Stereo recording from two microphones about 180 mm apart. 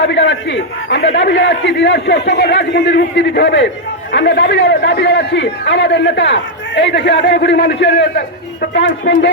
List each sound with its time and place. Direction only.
0.0 s a man's voice: 80° left